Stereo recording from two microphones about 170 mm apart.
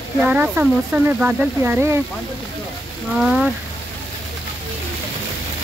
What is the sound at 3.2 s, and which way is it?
Speech, 5° right (ahead or behind).